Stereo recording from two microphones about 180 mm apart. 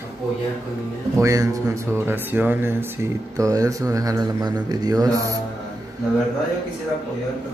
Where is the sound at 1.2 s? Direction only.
20° right (ahead or behind).